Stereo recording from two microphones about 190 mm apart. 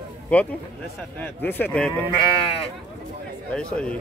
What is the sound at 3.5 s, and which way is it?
Speech, 5° left (ahead or behind).